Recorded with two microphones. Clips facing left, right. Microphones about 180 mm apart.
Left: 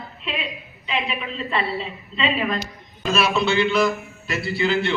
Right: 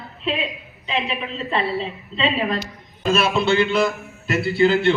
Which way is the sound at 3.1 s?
50° right (ahead or behind).